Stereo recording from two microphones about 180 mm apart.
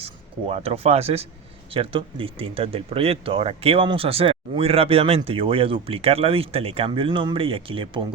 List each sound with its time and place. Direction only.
0.0 s speech: 35° right (ahead or behind)